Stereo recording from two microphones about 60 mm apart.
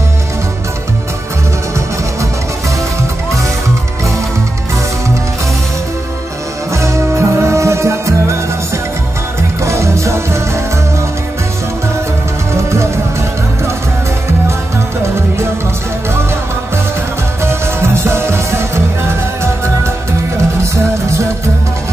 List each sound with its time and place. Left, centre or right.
6.7 s music: right
9.6 s music: right
12.5 s music: right
17.4 s music: right